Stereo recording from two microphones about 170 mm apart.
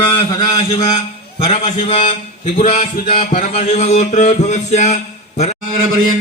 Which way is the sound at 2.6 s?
50° left (ahead or behind).